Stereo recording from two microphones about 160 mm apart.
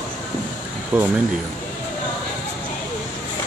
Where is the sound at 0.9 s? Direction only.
10° right (ahead or behind).